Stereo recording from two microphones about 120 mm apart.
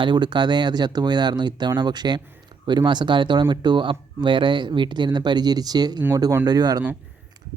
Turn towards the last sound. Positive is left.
turn(degrees=-35)  # may be behind; listen again after turning